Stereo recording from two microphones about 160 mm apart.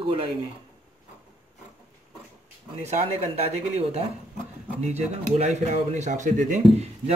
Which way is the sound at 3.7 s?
40° right (ahead or behind).